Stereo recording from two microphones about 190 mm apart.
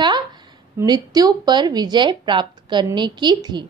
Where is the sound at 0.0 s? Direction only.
25° right (ahead or behind).